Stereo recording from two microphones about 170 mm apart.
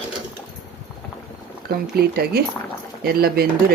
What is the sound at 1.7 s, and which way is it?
Speech, 65° right (ahead or behind).